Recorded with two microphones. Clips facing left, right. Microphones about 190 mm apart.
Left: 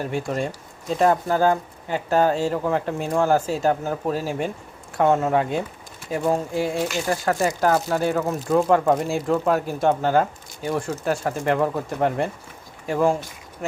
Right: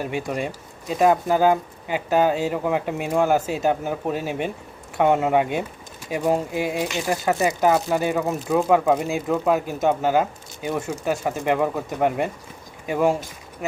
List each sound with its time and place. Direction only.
0.0 s speech: 10° right (ahead or behind)